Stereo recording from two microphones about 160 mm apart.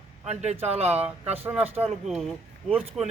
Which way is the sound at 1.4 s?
10° right (ahead or behind).